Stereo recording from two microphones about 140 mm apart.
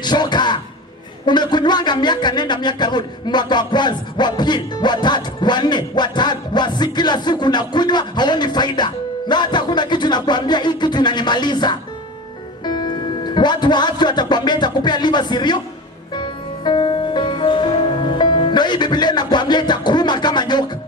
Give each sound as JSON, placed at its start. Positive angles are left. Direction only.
{"t": 0.0, "sound": "a man's voice", "side_deg": 30}
{"t": 16.2, "sound": "music", "side_deg": 35}